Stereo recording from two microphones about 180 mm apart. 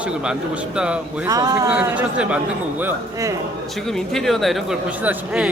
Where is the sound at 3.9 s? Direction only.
Centre (ahead or behind).